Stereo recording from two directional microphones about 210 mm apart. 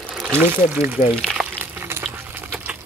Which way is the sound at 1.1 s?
Centre (ahead or behind).